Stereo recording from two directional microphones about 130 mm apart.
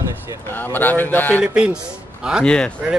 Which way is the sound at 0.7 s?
15° left (ahead or behind).